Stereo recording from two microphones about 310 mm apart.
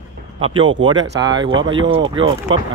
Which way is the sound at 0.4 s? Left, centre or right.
Centre.